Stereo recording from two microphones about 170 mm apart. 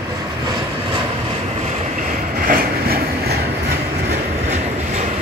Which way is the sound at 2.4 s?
60° right (ahead or behind).